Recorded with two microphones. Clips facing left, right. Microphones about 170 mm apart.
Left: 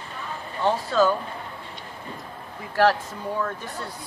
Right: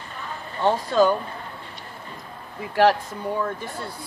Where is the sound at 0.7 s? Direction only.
15° right (ahead or behind).